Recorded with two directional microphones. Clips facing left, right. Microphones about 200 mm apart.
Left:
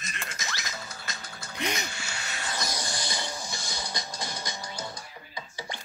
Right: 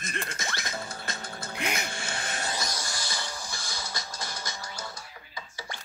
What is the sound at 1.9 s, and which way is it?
Vehicle, 50° right (ahead or behind).